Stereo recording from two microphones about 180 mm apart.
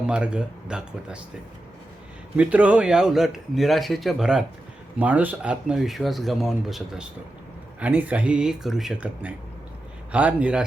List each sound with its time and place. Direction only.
0.1 s speech: 5° right (ahead or behind)
2.3 s speech: 5° right (ahead or behind)